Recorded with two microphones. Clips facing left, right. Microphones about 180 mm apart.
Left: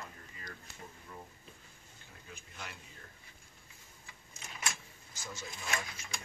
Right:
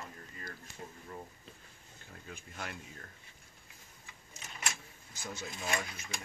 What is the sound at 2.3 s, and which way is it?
Speech, 55° right (ahead or behind).